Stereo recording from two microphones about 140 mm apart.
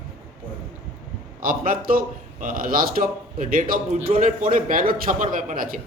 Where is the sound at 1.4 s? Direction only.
80° right.